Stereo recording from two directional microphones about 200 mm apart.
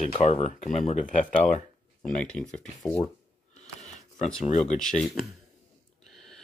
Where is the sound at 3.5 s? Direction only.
35° left (ahead or behind).